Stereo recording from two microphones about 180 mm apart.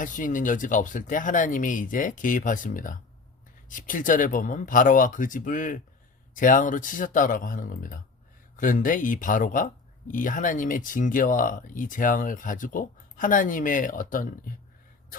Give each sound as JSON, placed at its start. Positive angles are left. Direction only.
{"t": 0.0, "sound": "speech", "side_deg": 45}